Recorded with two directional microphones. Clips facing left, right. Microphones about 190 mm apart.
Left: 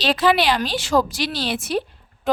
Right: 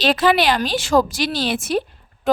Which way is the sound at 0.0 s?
50° right (ahead or behind).